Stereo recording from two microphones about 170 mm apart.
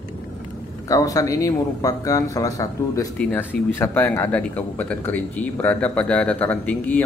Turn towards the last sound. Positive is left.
turn(degrees=10)  # may be behind; listen again after turning